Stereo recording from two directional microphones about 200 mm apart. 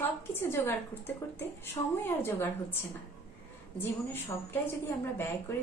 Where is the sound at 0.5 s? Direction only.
10° left (ahead or behind).